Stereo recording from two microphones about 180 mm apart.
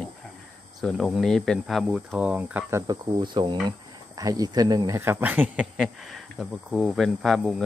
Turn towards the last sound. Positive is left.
turn(degrees=0)  # may be behind; listen again after turning